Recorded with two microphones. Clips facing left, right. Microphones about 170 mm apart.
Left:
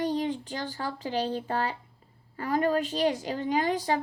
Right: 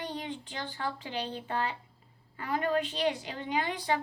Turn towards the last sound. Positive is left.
turn(degrees=40)  # may be behind; listen again after turning